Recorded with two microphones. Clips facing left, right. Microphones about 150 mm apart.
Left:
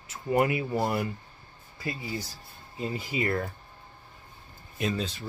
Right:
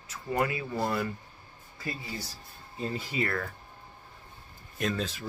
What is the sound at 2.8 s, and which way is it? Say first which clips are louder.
Speech: left 1 dB; 15° left (ahead or behind).